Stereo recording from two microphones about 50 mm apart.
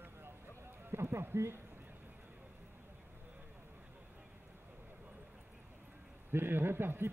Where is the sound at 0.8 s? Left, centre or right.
Right.